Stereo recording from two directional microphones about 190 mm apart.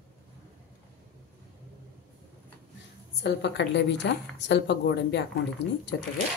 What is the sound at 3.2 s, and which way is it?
A woman's voice, 65° left (ahead or behind).